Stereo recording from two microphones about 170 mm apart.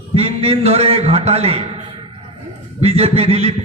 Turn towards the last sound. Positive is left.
turn(degrees=-35)  # may be behind; listen again after turning